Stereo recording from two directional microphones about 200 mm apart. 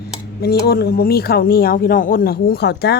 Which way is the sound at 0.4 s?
50° left (ahead or behind).